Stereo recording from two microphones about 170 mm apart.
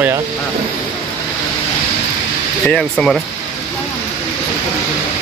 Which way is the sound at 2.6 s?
5° left (ahead or behind).